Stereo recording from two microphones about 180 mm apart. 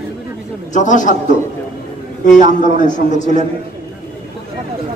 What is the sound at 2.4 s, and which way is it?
A man's voice, 45° left (ahead or behind).